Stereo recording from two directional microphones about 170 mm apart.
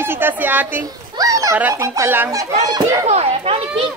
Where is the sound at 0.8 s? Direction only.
20° right (ahead or behind).